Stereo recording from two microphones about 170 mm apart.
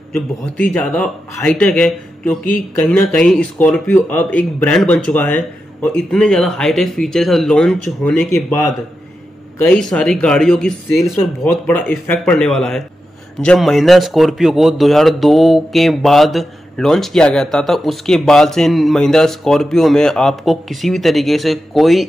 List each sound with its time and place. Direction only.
0.1 s a man's voice: 5° left (ahead or behind)
9.6 s a man's voice: 5° left (ahead or behind)